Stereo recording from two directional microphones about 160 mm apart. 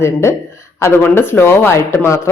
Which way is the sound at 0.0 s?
15° left (ahead or behind).